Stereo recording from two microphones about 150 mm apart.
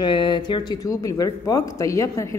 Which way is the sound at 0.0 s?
30° left (ahead or behind).